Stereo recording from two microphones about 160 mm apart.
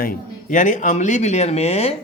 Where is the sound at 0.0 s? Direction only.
60° left (ahead or behind); by 2.0 s 40° left (ahead or behind).